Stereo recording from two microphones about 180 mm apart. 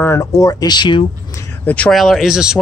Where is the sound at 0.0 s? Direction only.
15° left (ahead or behind).